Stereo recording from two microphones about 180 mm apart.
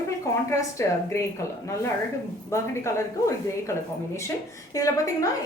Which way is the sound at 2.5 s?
15° left (ahead or behind).